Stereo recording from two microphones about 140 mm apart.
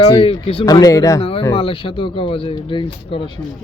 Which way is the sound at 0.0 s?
40° left (ahead or behind).